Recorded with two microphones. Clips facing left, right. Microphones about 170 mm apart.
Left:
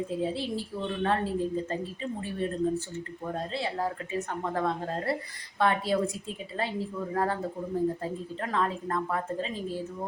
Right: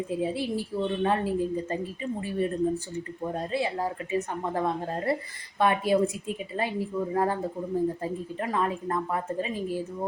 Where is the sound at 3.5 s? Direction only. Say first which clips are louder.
Right 3 dB; 15° right (ahead or behind).